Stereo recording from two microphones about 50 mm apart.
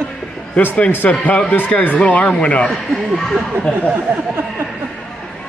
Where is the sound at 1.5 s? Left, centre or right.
Left.